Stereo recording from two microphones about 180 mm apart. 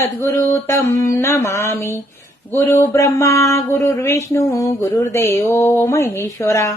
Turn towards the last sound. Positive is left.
turn(degrees=15)  # may be behind; listen again after turning